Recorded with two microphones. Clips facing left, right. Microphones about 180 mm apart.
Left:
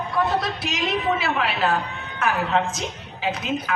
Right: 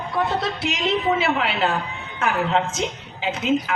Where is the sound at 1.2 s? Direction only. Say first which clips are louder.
Right 2 dB; 25° right (ahead or behind).